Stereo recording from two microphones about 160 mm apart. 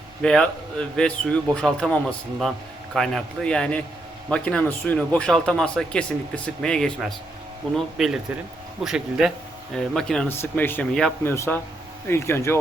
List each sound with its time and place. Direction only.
0.2 s a man's voice: 5° left (ahead or behind)
10.2 s speech: 15° left (ahead or behind)